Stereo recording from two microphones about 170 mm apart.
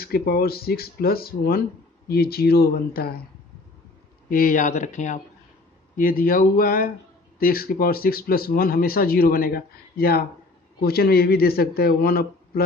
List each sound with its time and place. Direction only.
0.0 s speech: 65° left (ahead or behind)
4.3 s speech: 55° left (ahead or behind)